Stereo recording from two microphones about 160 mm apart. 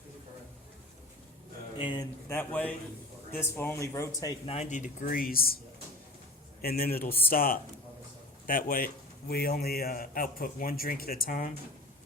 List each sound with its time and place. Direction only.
1.7 s a sound: 30° left (ahead or behind)
2.3 s speech: 10° left (ahead or behind)
4.4 s a man's voice: 40° left (ahead or behind); by 5.5 s 65° left (ahead or behind)
6.6 s a man's voice: 70° left (ahead or behind)
9.3 s a man's voice: 75° left (ahead or behind)